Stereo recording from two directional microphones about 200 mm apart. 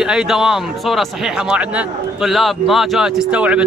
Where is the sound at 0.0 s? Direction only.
5° right (ahead or behind).